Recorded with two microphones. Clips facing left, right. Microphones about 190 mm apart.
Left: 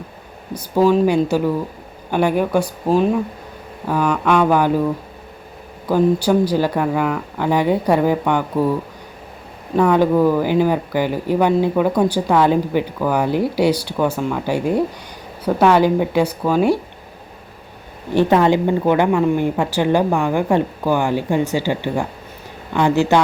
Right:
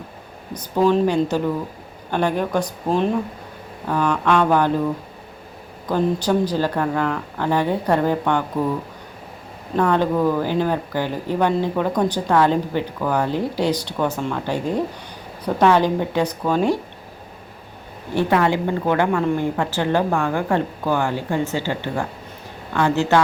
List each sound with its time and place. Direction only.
0.5 s speech: 5° left (ahead or behind)
5.9 s speech: 10° left (ahead or behind)
9.7 s speech: 10° left (ahead or behind)
18.1 s speech: 20° left (ahead or behind)